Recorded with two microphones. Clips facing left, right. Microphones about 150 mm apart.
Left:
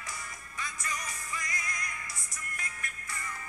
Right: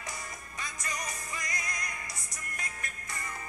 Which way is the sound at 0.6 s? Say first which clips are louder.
Even; 20° right (ahead or behind).